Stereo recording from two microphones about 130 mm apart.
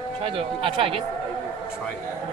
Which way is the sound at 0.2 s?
45° right (ahead or behind).